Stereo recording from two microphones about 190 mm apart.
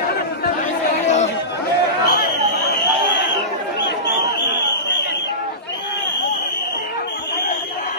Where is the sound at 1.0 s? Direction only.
35° left (ahead or behind).